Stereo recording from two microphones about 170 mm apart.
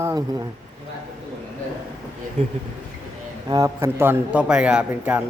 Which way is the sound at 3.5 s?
15° right (ahead or behind).